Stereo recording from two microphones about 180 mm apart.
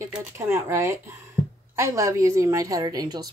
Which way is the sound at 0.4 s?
15° right (ahead or behind).